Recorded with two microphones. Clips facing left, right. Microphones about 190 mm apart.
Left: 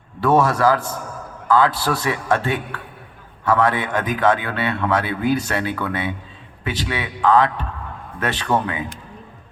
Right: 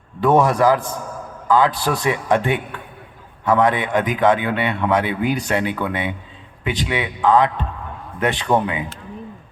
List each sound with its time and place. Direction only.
0.2 s a man's voice: 15° right (ahead or behind)